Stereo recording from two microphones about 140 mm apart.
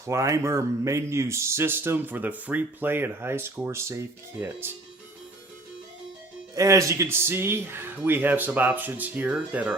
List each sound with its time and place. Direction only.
0.0 s a man's voice: 20° right (ahead or behind)
6.5 s a man's voice: 25° right (ahead or behind)